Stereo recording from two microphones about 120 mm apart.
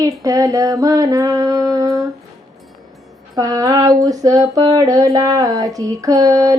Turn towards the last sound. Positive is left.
turn(degrees=-30)  # may be behind; listen again after turning